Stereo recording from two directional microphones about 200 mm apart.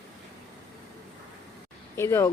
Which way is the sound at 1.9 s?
15° left (ahead or behind).